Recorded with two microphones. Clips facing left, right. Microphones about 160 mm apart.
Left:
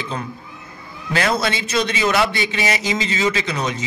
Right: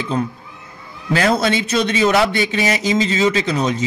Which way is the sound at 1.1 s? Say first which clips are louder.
Right 4 dB; 40° right (ahead or behind).